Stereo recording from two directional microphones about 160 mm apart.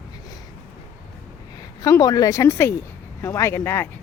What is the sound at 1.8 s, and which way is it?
A woman's voice, 25° left (ahead or behind).